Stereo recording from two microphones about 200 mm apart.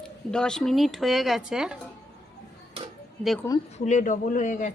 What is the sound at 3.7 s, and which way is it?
A man's voice, 35° left (ahead or behind).